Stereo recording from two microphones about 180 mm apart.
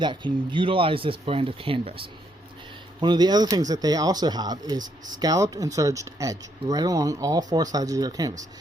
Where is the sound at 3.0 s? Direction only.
25° right (ahead or behind).